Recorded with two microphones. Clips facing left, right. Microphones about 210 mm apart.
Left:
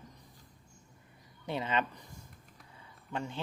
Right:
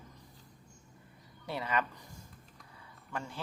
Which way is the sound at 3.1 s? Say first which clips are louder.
Left 3 dB; 20° left (ahead or behind).